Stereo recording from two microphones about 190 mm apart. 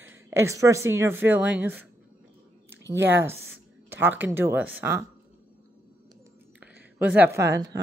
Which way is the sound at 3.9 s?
10° right (ahead or behind).